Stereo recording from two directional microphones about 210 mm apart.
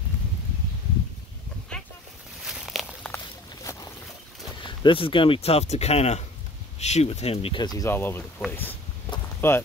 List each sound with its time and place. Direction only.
2.4 s a sound: centre (ahead or behind)
3.7 s boat: 15° left (ahead or behind)
4.6 s speech: 25° left (ahead or behind)